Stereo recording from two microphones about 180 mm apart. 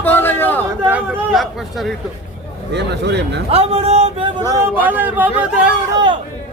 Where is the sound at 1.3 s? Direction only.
Centre (ahead or behind).